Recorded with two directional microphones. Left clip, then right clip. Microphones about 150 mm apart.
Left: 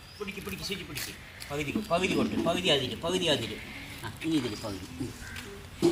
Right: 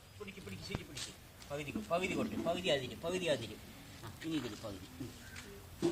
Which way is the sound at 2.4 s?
10° right (ahead or behind).